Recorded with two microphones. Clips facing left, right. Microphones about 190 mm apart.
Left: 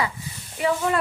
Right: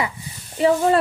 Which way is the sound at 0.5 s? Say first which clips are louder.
Right 6 dB; 30° right (ahead or behind).